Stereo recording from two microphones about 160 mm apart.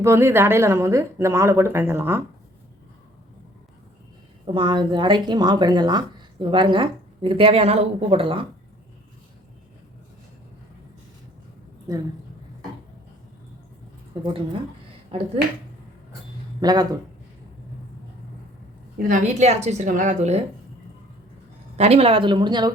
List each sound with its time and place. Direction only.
0.0 s speech: 15° right (ahead or behind)
4.4 s speech: 30° right (ahead or behind)
15.1 s speech: 40° right (ahead or behind)
16.6 s speech: 25° right (ahead or behind)
19.0 s a woman's voice: 50° right (ahead or behind)
21.8 s speech: 40° right (ahead or behind)